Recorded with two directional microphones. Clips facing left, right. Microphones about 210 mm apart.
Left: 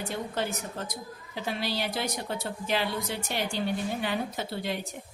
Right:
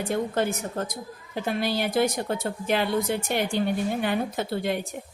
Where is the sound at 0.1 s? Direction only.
50° right (ahead or behind).